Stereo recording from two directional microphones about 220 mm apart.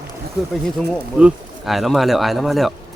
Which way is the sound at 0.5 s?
Centre (ahead or behind).